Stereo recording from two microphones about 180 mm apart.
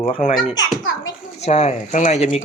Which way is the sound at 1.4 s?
35° left (ahead or behind).